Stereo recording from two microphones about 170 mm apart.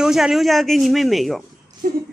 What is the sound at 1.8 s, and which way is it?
Speech, 55° right (ahead or behind).